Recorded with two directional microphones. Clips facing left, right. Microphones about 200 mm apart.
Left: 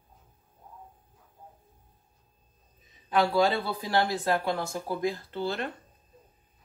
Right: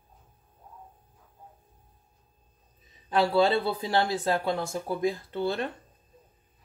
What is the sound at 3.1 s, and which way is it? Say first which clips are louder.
Speech: right 1 dB; 30° right (ahead or behind).